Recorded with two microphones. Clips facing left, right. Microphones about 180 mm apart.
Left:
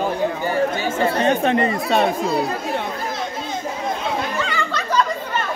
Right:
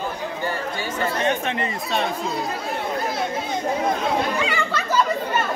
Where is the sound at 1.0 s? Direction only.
35° left (ahead or behind).